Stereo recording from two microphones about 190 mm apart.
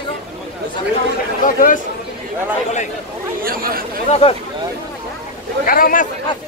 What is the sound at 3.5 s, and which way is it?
Speech, 50° right (ahead or behind).